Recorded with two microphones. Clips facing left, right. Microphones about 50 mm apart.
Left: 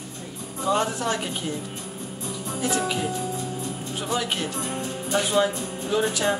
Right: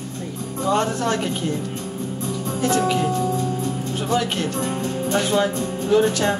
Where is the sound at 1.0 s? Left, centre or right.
Right.